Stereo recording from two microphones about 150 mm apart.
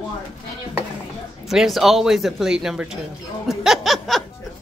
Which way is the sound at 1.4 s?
Centre (ahead or behind).